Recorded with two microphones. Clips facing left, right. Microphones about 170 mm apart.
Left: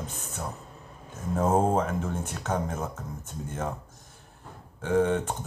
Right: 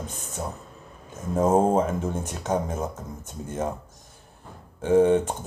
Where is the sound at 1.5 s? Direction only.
25° right (ahead or behind).